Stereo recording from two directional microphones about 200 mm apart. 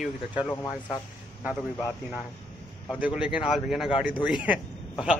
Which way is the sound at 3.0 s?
5° right (ahead or behind).